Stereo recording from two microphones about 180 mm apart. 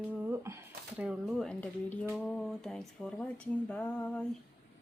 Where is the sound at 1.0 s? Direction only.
5° right (ahead or behind).